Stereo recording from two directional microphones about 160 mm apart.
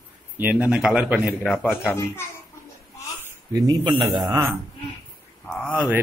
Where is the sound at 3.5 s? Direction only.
25° right (ahead or behind).